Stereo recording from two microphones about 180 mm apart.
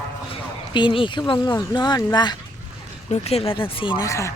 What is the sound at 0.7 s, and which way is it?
Speech, 25° left (ahead or behind).